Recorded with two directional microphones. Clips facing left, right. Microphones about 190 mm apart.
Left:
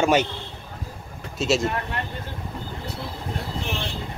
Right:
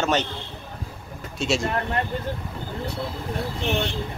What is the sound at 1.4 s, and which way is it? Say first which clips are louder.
Speech: left 2 dB; centre (ahead or behind).